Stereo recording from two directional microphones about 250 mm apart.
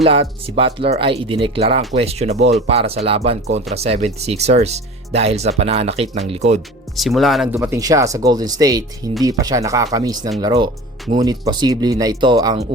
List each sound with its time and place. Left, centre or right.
0.0 s speech: right
6.9 s speech: centre
7.5 s speech: centre